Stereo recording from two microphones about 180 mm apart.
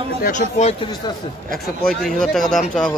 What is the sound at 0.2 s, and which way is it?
Speech, 45° left (ahead or behind).